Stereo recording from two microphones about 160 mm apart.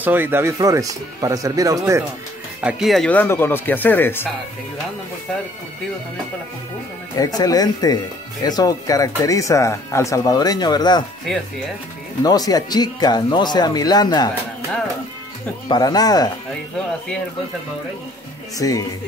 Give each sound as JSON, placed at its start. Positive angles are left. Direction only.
{"t": 0.0, "sound": "speech", "side_deg": -10}
{"t": 2.6, "sound": "speech", "side_deg": 0}
{"t": 7.2, "sound": "speech", "side_deg": 25}
{"t": 12.2, "sound": "speech", "side_deg": 25}
{"t": 15.7, "sound": "speech", "side_deg": 25}
{"t": 18.6, "sound": "speech", "side_deg": 20}